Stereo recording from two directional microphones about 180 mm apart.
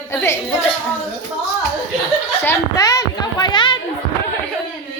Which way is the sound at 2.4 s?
20° left (ahead or behind).